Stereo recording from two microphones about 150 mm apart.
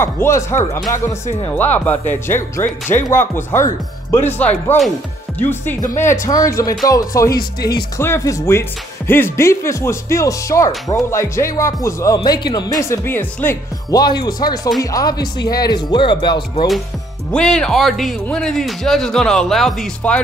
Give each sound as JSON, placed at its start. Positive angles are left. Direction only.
{"t": 0.0, "sound": "speech", "side_deg": 20}
{"t": 1.6, "sound": "speech", "side_deg": 10}
{"t": 13.8, "sound": "speech", "side_deg": 25}
{"t": 17.3, "sound": "speech", "side_deg": 5}